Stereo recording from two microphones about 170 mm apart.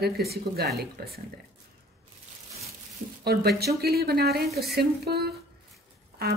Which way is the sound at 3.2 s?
70° right (ahead or behind).